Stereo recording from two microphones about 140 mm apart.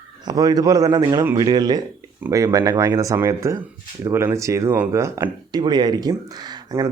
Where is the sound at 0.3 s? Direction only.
25° right (ahead or behind).